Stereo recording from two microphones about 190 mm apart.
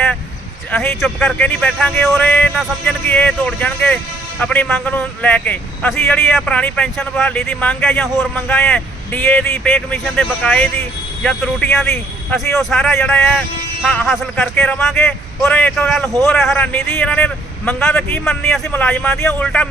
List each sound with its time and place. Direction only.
0.7 s speech: 10° left (ahead or behind)